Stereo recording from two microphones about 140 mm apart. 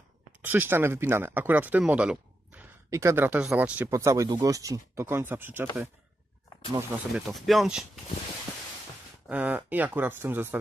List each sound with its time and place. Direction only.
0.4 s speech: 15° right (ahead or behind)
2.9 s speech: 20° right (ahead or behind)
7.1 s speech: centre (ahead or behind)
9.3 s speech: 10° right (ahead or behind)